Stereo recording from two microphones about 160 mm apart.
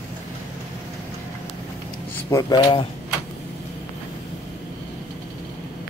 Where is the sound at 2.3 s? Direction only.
20° left (ahead or behind).